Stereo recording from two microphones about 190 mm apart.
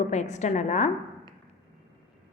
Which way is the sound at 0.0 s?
40° left (ahead or behind).